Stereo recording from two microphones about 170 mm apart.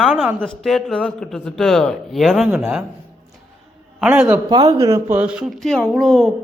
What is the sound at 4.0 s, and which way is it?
Speech, 10° right (ahead or behind).